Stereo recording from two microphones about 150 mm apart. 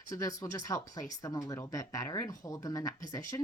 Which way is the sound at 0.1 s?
20° left (ahead or behind).